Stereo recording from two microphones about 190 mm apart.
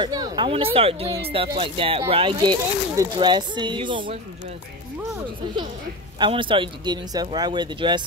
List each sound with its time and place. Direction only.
0.0 s speech: 25° right (ahead or behind)
6.1 s speech: 25° right (ahead or behind)